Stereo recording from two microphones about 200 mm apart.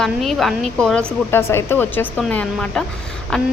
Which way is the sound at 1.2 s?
10° left (ahead or behind).